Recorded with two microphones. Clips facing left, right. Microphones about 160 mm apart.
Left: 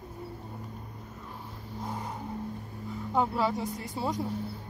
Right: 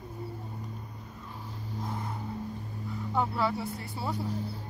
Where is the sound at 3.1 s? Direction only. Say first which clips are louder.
Left 2 dB; 15° left (ahead or behind).